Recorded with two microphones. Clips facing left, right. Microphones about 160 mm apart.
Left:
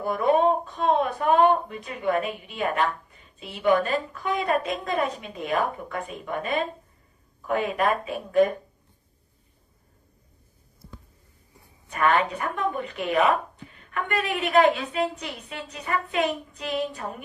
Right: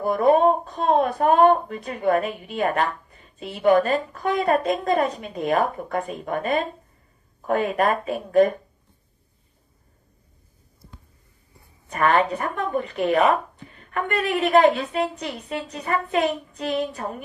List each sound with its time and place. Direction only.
0.0 s a woman's voice: 40° right (ahead or behind)
11.9 s a woman's voice: 35° right (ahead or behind)